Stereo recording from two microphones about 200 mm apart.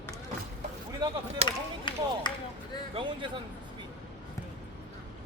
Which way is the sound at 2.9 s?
25° right (ahead or behind).